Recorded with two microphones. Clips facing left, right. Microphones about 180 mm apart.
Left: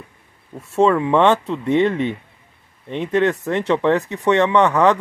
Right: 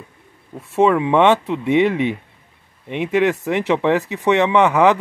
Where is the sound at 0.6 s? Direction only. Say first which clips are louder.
Even; centre (ahead or behind).